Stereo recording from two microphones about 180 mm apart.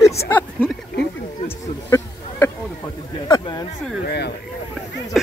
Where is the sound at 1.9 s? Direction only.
15° left (ahead or behind).